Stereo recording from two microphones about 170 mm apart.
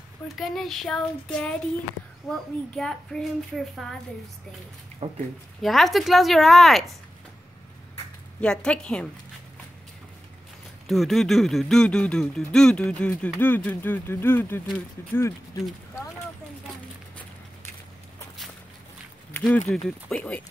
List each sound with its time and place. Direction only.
0.4 s speech: centre (ahead or behind)
5.0 s speech: 35° right (ahead or behind)
5.6 s speech: centre (ahead or behind)
8.4 s a woman's voice: 5° left (ahead or behind)
10.9 s speech: centre (ahead or behind)
19.3 s a sound: 10° left (ahead or behind)
20.1 s a woman's voice: 5° left (ahead or behind)